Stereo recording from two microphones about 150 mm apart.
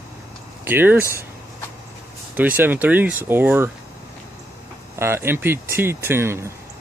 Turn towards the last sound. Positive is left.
turn(degrees=-15)  # may be behind; listen again after turning